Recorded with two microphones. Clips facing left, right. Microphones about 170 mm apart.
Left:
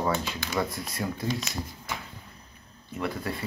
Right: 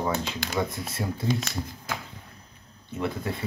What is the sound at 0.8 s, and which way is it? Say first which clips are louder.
Speech: right 1 dB; 25° right (ahead or behind).